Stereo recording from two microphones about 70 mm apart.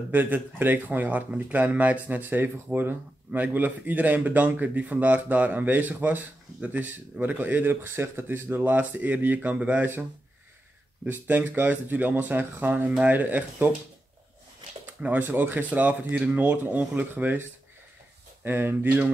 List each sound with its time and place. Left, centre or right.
0.1 s speech: right
11.1 s speech: right
15.0 s speech: right